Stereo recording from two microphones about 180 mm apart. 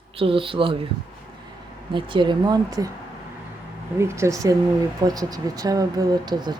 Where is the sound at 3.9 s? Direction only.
15° right (ahead or behind).